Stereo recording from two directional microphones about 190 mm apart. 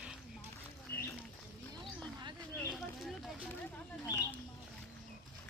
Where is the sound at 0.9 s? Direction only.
55° left (ahead or behind).